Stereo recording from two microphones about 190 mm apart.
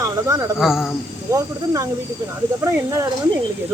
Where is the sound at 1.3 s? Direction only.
15° right (ahead or behind).